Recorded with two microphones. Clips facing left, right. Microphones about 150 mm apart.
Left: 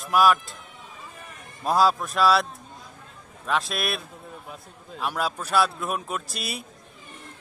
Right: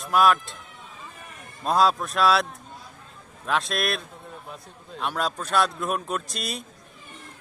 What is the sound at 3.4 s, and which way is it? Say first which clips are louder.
A man's voice: right 1 dB; centre (ahead or behind).